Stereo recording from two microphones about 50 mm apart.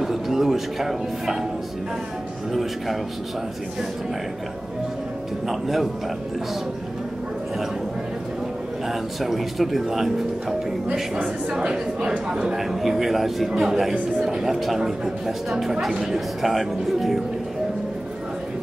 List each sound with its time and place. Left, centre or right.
0.0 s a man's voice: centre
2.5 s speech: centre
5.5 s speech: centre
8.8 s speech: centre
11.2 s speech: centre
12.5 s speech: centre